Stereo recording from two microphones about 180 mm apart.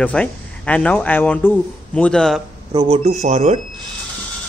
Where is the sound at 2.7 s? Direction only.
35° right (ahead or behind).